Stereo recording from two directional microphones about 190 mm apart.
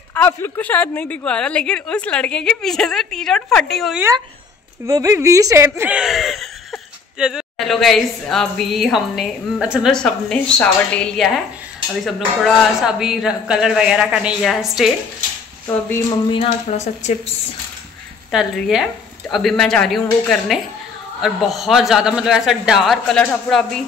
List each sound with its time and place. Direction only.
0.1 s speech: 10° left (ahead or behind)
4.8 s speech: 15° right (ahead or behind); by 14.9 s centre (ahead or behind)
15.9 s speech: 25° left (ahead or behind)
18.3 s speech: centre (ahead or behind)